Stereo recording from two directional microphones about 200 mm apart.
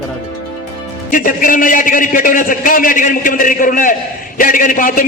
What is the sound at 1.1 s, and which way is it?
A man's voice, 45° left (ahead or behind).